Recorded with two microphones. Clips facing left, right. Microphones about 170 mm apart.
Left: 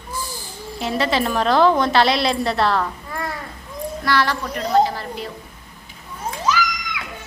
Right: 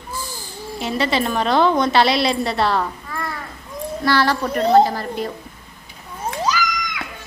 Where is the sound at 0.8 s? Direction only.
Centre (ahead or behind).